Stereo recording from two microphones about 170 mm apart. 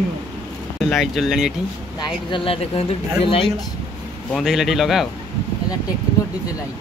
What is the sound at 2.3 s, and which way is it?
Speech, 35° left (ahead or behind).